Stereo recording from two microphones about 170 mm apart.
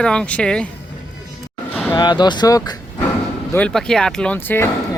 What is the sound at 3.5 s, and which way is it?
Speech, 5° left (ahead or behind).